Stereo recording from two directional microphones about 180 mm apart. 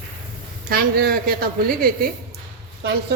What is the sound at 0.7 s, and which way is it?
Speech, 55° right (ahead or behind).